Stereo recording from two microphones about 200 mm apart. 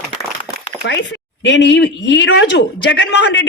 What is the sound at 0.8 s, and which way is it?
Speech, 65° left (ahead or behind).